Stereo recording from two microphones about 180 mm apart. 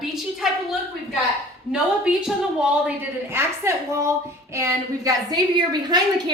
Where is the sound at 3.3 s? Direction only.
15° right (ahead or behind).